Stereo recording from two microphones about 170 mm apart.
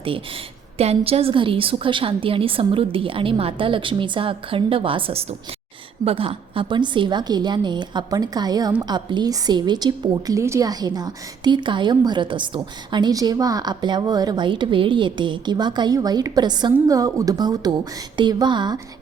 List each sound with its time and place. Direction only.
0.0 s a woman's voice: 30° right (ahead or behind)